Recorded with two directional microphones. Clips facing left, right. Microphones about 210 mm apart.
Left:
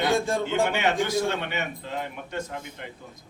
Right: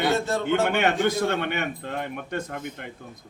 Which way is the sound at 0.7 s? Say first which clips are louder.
Right 2 dB; 55° right (ahead or behind).